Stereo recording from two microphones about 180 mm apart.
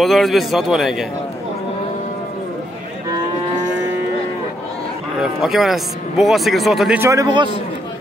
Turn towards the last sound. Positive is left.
turn(degrees=-25)  # may be behind; listen again after turning